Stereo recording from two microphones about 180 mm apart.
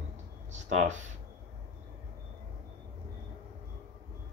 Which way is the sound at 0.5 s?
40° right (ahead or behind).